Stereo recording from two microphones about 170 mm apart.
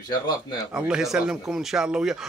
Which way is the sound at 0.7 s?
5° right (ahead or behind).